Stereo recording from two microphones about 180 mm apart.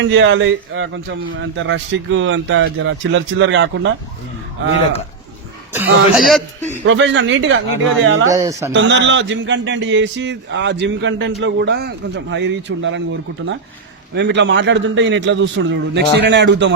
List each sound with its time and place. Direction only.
0.0 s a man's voice: 90° right
5.7 s a man's voice: 10° right (ahead or behind)
6.8 s a man's voice: 90° right
8.3 s speech: 20° right (ahead or behind)
8.7 s a man's voice: 90° right
14.2 s a man's voice: 75° right (ahead or behind)
16.2 s a man's voice: 70° right (ahead or behind)